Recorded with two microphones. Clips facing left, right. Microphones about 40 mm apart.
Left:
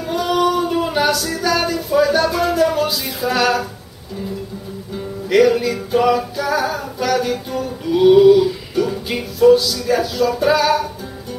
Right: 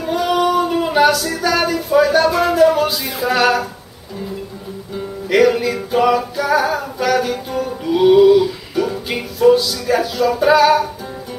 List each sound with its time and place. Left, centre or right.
0.0 s male singing: centre
1.3 s music: centre
4.9 s music: centre